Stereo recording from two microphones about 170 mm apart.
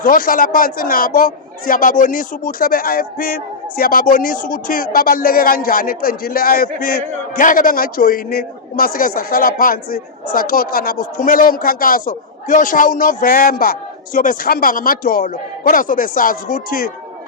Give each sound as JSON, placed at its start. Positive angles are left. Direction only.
{"t": 0.0, "sound": "a man's voice", "side_deg": 55}